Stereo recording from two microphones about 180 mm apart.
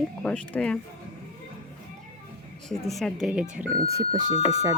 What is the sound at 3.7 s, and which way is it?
Speech, 20° right (ahead or behind).